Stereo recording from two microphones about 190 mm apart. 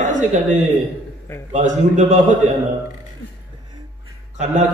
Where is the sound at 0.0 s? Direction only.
40° right (ahead or behind).